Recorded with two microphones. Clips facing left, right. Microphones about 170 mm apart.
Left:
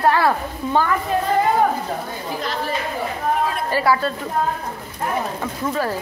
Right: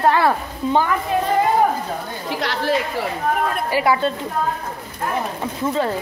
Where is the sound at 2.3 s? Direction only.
85° right.